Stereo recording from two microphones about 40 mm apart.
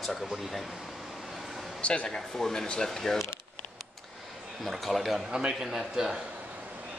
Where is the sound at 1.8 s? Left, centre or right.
Left.